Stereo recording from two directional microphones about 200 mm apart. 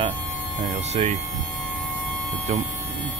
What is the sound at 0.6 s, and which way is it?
Speech, 30° right (ahead or behind).